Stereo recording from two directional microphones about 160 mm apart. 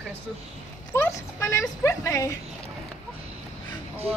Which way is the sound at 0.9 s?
15° left (ahead or behind).